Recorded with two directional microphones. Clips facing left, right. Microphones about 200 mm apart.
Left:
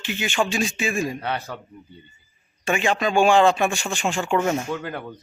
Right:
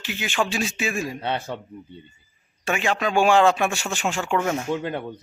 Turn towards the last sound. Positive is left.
turn(degrees=-25)  # may be behind; listen again after turning